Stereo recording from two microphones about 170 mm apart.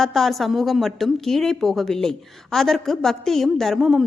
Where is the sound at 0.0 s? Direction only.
Centre (ahead or behind).